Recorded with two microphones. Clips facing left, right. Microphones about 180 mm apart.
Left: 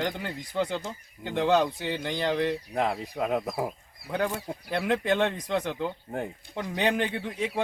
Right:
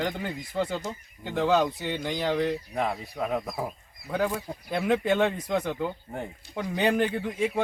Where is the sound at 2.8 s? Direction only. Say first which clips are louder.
Left 4 dB; 20° left (ahead or behind).